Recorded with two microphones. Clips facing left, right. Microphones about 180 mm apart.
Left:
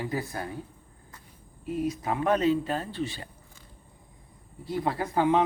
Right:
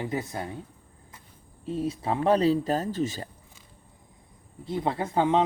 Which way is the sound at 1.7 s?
30° right (ahead or behind).